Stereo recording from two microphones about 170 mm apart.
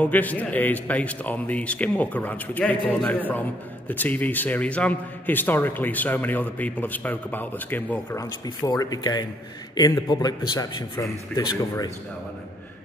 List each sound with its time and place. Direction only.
0.0 s a man's voice: 10° left (ahead or behind)